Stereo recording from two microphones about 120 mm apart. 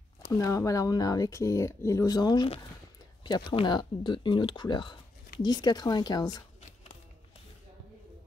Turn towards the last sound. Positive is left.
turn(degrees=35)  # may be behind; listen again after turning